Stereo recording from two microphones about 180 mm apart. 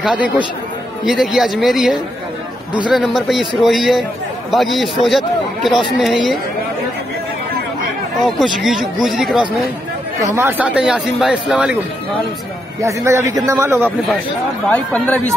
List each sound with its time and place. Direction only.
1.0 s speech: centre (ahead or behind)
8.4 s speech: centre (ahead or behind)
10.2 s speech: 15° right (ahead or behind)
12.8 s a man's voice: 15° right (ahead or behind)
14.7 s speech: 10° left (ahead or behind)